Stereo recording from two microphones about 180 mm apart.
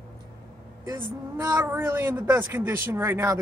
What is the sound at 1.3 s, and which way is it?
A man's voice, 15° right (ahead or behind).